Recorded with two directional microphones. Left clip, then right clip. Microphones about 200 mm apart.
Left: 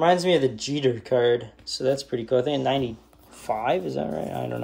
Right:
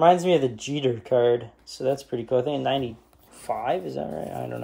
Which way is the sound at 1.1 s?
5° right (ahead or behind).